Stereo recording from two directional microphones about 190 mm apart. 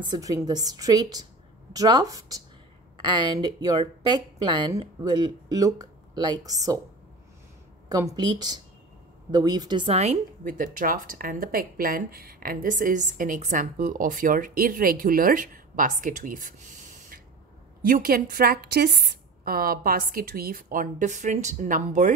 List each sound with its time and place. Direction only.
0.0 s speech: 20° right (ahead or behind)
7.9 s a woman's voice: 20° right (ahead or behind); by 16.5 s 45° right (ahead or behind)
17.8 s a woman's voice: 50° right (ahead or behind)